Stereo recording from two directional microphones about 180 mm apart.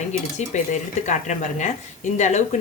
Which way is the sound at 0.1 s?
40° left (ahead or behind).